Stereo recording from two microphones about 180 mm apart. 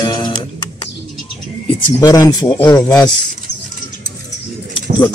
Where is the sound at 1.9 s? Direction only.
20° left (ahead or behind).